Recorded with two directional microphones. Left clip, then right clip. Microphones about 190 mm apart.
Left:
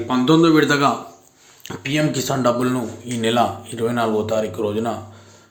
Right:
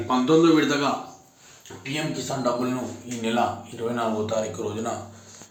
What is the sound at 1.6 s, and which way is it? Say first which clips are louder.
Speech: left 10 dB; 50° left (ahead or behind).